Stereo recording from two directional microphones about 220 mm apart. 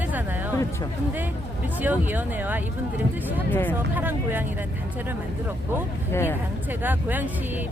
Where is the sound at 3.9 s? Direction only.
10° right (ahead or behind).